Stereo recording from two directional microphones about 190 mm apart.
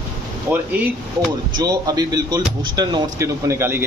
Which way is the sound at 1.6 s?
20° right (ahead or behind).